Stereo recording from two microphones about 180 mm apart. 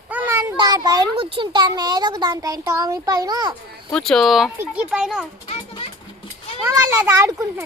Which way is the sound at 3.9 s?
Centre (ahead or behind).